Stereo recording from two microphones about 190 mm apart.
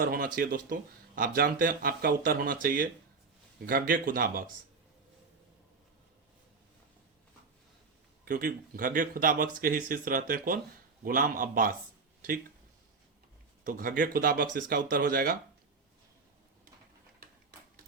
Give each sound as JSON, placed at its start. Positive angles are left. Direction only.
{"t": 0.0, "sound": "speech", "side_deg": -50}
{"t": 8.2, "sound": "speech", "side_deg": -50}
{"t": 13.7, "sound": "speech", "side_deg": -45}